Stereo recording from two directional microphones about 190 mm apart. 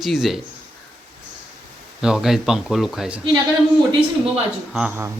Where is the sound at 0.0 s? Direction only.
Centre (ahead or behind).